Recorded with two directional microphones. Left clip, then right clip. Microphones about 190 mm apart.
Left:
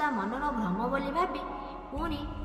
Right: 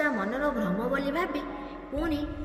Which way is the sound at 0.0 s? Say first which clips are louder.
Right 3 dB; 10° right (ahead or behind).